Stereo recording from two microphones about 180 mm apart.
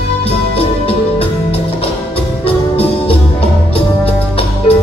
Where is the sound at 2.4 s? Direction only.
30° left (ahead or behind).